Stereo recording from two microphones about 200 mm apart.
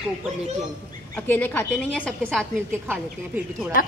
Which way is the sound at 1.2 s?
10° left (ahead or behind).